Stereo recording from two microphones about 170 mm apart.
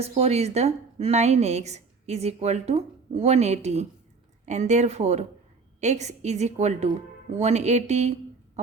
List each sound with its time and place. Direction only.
0.0 s a woman's voice: 35° right (ahead or behind)